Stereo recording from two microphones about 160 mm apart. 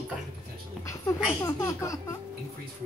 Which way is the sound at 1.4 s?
20° left (ahead or behind).